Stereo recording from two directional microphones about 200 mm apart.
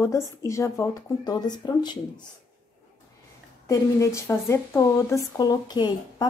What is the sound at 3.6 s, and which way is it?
Speech, 15° left (ahead or behind).